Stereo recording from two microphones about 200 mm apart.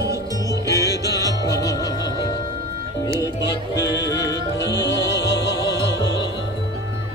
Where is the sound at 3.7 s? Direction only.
60° left (ahead or behind).